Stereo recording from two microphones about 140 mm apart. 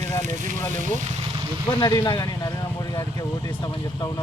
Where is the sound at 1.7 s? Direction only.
30° left (ahead or behind).